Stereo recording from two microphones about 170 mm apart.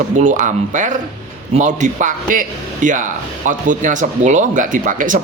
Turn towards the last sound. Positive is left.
turn(degrees=-50)  # may be behind; listen again after turning